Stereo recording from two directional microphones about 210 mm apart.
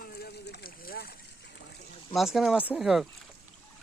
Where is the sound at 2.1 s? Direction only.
Centre (ahead or behind).